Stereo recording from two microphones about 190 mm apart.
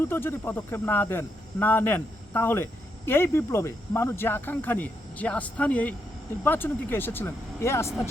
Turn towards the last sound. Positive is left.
turn(degrees=15)  # may be behind; listen again after turning